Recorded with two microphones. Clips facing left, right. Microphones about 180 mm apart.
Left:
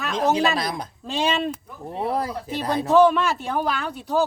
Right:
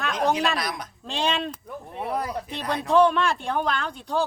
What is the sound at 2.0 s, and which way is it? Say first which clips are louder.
Speech: left 4 dB; 30° left (ahead or behind).